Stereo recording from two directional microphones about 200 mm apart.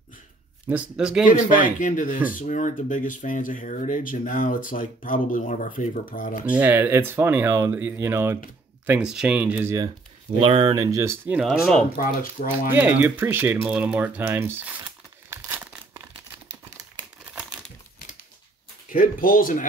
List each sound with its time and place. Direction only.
0.7 s speech: 5° right (ahead or behind)
1.3 s speech: 40° left (ahead or behind)
6.5 s speech: 10° right (ahead or behind)
10.4 s speech: 25° right (ahead or behind); by 11.8 s centre (ahead or behind)
12.0 s speech: 45° left (ahead or behind)
12.7 s speech: 10° right (ahead or behind)
15.2 s crumpling: 10° right (ahead or behind)
18.9 s speech: 45° left (ahead or behind)